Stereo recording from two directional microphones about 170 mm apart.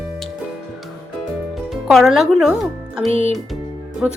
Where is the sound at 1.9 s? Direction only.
Centre (ahead or behind).